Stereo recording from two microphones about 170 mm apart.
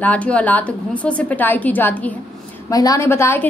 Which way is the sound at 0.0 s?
10° left (ahead or behind).